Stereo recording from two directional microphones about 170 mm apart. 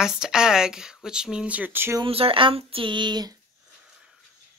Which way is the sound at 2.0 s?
30° right (ahead or behind).